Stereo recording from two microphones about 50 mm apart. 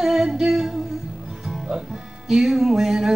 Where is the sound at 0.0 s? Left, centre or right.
Centre.